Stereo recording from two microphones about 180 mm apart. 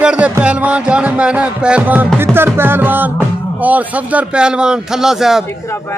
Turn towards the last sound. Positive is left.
turn(degrees=0)  # may be behind; listen again after turning